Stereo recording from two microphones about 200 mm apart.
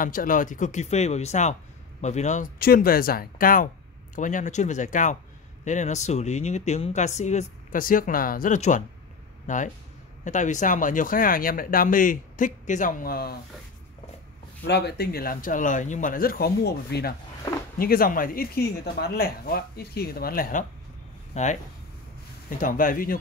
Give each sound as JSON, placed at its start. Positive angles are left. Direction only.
{"t": 0.0, "sound": "speech", "side_deg": 45}
{"t": 14.6, "sound": "speech", "side_deg": 55}
{"t": 21.4, "sound": "speech", "side_deg": 35}
{"t": 22.6, "sound": "speech", "side_deg": 45}